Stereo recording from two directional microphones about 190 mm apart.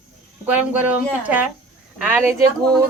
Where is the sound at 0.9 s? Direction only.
10° right (ahead or behind).